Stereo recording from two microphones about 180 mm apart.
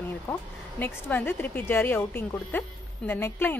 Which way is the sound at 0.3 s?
10° left (ahead or behind).